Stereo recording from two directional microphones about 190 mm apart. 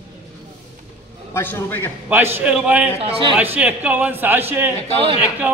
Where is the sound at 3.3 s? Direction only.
10° right (ahead or behind).